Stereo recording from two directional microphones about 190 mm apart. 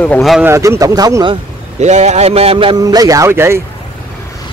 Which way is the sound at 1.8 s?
35° right (ahead or behind).